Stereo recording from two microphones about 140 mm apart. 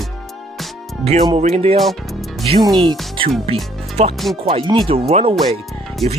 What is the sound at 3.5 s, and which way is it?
Speech, 40° right (ahead or behind).